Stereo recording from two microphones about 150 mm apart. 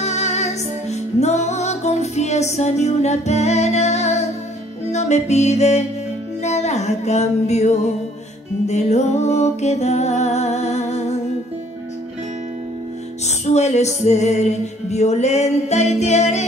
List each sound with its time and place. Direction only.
0.0 s music: 50° left (ahead or behind)
13.5 s music: 50° left (ahead or behind)